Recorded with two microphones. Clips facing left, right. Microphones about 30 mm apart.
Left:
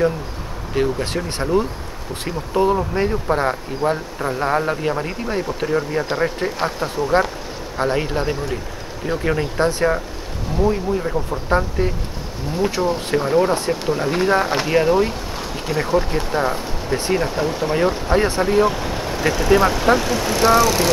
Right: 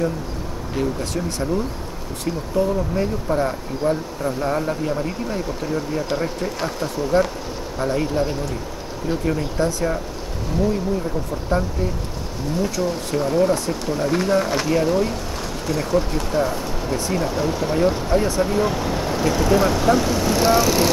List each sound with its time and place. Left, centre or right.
0.7 s speech: left
7.1 s speech: left
10.6 s speech: left
18.6 s speech: centre
20.6 s speech: centre